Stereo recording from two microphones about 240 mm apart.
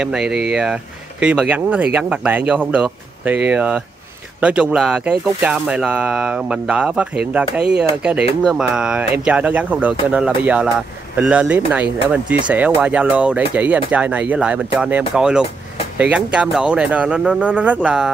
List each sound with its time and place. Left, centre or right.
0.0 s speech: centre